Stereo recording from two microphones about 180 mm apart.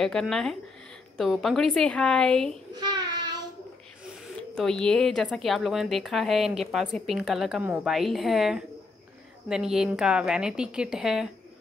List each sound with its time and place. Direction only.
0.0 s speech: 5° left (ahead or behind)
2.7 s child singing: 25° right (ahead or behind)
4.6 s speech: 5° left (ahead or behind)